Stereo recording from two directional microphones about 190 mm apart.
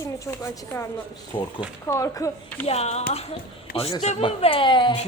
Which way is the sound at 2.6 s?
35° left (ahead or behind).